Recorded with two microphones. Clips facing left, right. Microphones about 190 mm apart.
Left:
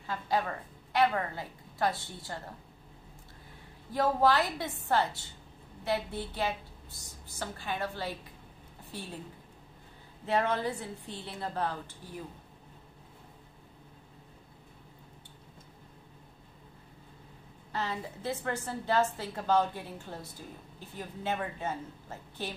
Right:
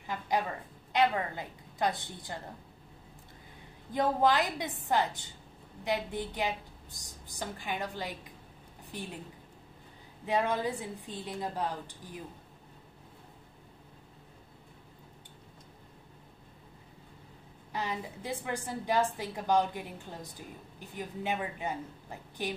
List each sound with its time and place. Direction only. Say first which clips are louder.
0.0 s a woman's voice: even; 15° right (ahead or behind)
3.9 s a woman's voice: left 1 dB; 20° right (ahead or behind)
10.2 s a woman's voice: even; 15° right (ahead or behind)
17.7 s a woman's voice: even; 15° right (ahead or behind)